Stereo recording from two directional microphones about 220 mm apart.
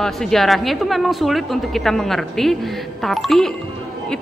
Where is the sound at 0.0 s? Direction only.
Centre (ahead or behind).